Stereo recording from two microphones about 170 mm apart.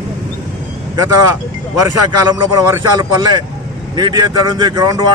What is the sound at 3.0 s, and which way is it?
A man's voice, 25° right (ahead or behind).